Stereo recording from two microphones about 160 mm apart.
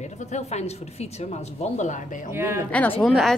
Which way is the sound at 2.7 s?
10° left (ahead or behind).